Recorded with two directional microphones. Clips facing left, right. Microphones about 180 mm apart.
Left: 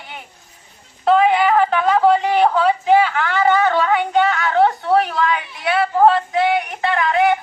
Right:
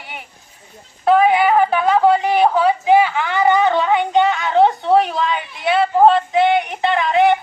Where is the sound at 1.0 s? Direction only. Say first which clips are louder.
Right 1 dB; 10° right (ahead or behind).